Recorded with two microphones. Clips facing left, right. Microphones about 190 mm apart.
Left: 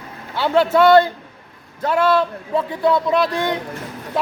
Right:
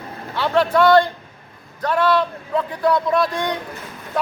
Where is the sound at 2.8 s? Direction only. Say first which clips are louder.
Left 1 dB; 25° left (ahead or behind).